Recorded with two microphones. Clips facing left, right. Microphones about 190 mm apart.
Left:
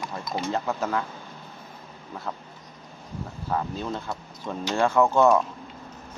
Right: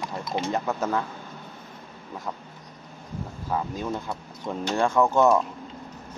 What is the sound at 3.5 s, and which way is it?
Speech, 10° right (ahead or behind).